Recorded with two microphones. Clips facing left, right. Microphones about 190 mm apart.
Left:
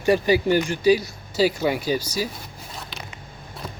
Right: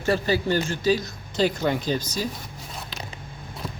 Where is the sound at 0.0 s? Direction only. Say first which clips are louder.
Left 4 dB; 15° left (ahead or behind).